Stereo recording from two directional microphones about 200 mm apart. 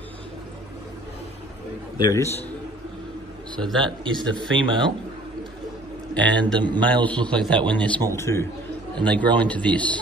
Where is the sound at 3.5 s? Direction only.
5° left (ahead or behind).